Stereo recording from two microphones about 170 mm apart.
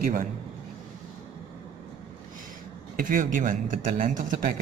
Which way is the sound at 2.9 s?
50° right (ahead or behind).